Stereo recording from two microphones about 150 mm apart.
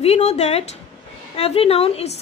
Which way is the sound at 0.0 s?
45° left (ahead or behind).